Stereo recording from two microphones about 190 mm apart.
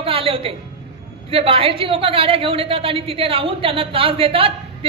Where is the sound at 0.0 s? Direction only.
30° right (ahead or behind).